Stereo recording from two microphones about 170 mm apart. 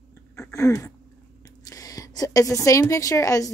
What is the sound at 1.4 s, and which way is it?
A woman's voice, 20° left (ahead or behind).